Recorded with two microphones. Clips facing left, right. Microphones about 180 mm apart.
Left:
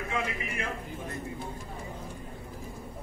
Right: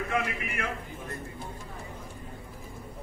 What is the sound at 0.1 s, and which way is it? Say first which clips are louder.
Speech: right 2 dB; 60° right (ahead or behind).